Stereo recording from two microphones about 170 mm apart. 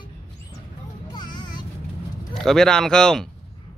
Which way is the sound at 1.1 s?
25° left (ahead or behind).